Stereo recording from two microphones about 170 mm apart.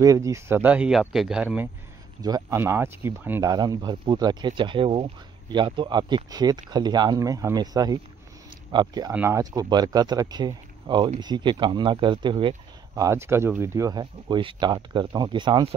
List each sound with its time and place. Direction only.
0.0 s speech: 20° right (ahead or behind)
2.2 s speech: 20° right (ahead or behind)